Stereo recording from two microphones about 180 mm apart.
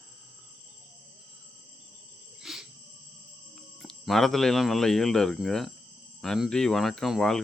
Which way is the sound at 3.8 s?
Centre (ahead or behind).